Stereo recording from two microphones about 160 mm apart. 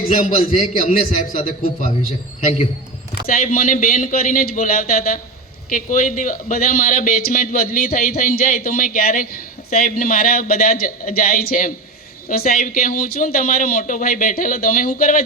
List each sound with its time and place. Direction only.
0.4 s a man's voice: 55° left (ahead or behind)
2.4 s a man's voice: 45° left (ahead or behind)
3.2 s a man's voice: 65° left (ahead or behind)